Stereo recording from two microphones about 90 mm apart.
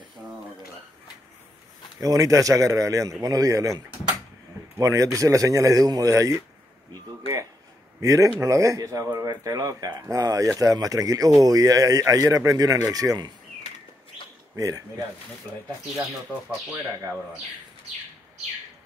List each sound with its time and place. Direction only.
2.0 s speech: 40° right (ahead or behind)
6.9 s a sound: 40° right (ahead or behind)
8.0 s speech: 35° right (ahead or behind)
14.5 s speech: 40° right (ahead or behind)